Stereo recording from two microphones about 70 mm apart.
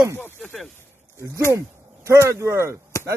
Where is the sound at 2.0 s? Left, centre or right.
Right.